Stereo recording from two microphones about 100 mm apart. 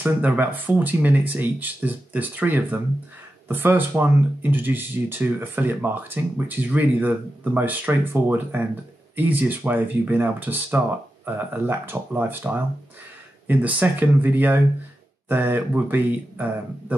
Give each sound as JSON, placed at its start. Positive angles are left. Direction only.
{"t": 0.0, "sound": "speech", "side_deg": -15}